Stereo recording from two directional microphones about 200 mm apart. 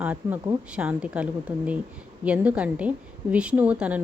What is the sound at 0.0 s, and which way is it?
Speech, 10° right (ahead or behind).